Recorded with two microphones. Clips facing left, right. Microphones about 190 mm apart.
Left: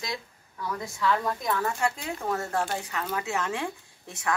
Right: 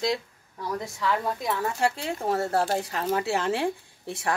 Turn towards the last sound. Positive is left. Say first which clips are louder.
# right 6 dB
turn(degrees=-30)  # may be behind; listen again after turning